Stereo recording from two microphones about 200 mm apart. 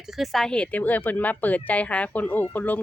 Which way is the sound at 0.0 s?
Centre (ahead or behind).